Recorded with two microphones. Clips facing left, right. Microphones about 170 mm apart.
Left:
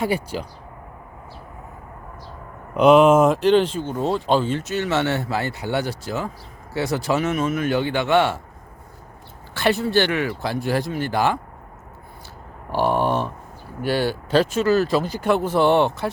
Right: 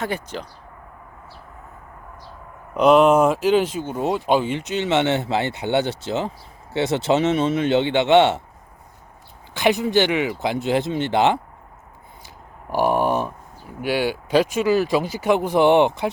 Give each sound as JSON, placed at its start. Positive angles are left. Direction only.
{"t": 0.0, "sound": "speech", "side_deg": 10}
{"t": 2.7, "sound": "speech", "side_deg": 0}
{"t": 9.6, "sound": "speech", "side_deg": -15}
{"t": 12.7, "sound": "speech", "side_deg": -10}